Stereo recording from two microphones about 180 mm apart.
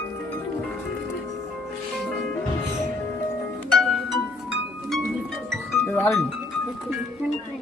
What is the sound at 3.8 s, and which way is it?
Music, centre (ahead or behind).